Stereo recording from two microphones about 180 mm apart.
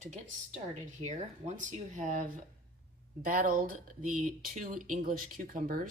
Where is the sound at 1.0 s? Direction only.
40° right (ahead or behind).